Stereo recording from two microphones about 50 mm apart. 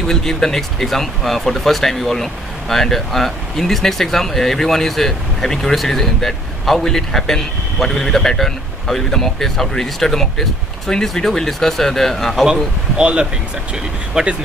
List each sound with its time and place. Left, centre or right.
0.0 s speech: centre
12.9 s speech: centre